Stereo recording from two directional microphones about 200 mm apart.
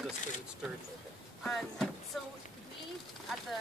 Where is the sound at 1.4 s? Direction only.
5° left (ahead or behind).